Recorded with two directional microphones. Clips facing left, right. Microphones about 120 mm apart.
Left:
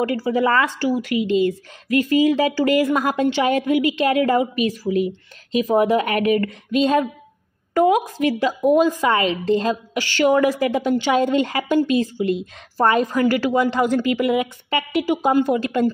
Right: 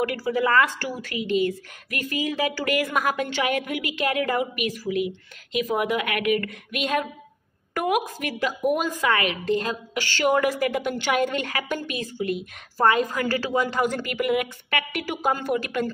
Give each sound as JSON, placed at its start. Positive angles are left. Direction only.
{"t": 0.0, "sound": "speech", "side_deg": 25}